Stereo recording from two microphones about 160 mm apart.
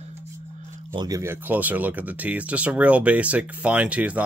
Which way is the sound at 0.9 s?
20° right (ahead or behind).